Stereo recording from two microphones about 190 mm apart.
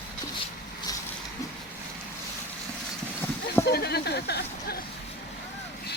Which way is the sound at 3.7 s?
55° left (ahead or behind).